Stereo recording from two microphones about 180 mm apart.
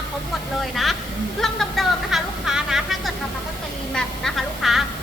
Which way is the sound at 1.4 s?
Centre (ahead or behind).